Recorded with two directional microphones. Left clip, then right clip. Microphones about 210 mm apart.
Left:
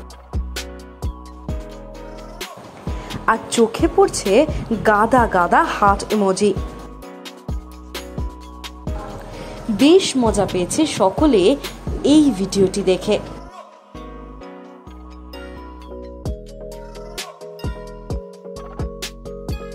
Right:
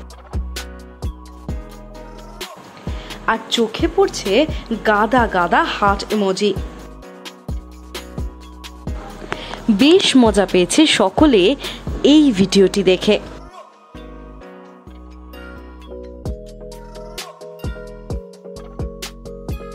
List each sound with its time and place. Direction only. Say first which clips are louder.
0.3 s music: left 1 dB; centre (ahead or behind)
3.0 s a woman's voice: left 1 dB; 5° left (ahead or behind)
7.2 s music: even; centre (ahead or behind)
9.8 s a woman's voice: right 2 dB; 20° right (ahead or behind)
16.2 s music: even; centre (ahead or behind)